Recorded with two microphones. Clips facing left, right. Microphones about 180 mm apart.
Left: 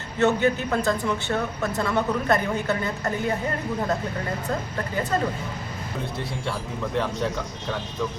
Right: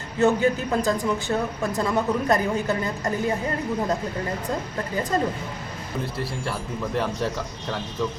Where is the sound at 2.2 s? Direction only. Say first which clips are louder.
Right 1 dB; 35° right (ahead or behind).